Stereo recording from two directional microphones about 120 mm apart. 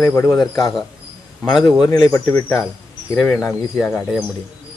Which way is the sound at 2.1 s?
25° left (ahead or behind).